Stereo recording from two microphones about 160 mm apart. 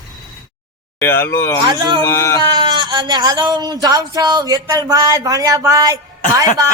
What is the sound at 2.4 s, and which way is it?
Speech, 25° right (ahead or behind).